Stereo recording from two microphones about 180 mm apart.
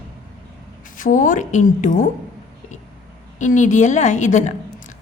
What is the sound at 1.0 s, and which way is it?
A woman's voice, 45° left (ahead or behind).